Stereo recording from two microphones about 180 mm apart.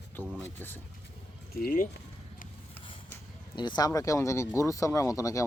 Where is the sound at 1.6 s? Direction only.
50° left (ahead or behind).